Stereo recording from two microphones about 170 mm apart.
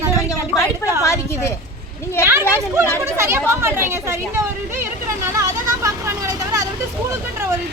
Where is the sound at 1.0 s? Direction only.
15° left (ahead or behind).